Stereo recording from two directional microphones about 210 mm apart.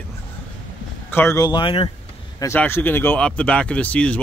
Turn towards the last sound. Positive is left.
turn(degrees=5)  # may be behind; listen again after turning